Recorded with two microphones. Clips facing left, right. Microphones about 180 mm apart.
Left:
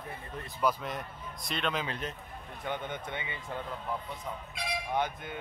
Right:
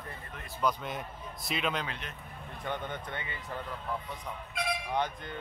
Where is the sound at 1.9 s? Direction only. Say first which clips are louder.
Left 5 dB; 35° left (ahead or behind).